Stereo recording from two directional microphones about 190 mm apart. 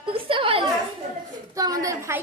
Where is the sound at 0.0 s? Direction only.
25° right (ahead or behind).